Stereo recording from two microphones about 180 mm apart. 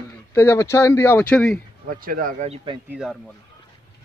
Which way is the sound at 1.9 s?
50° right (ahead or behind).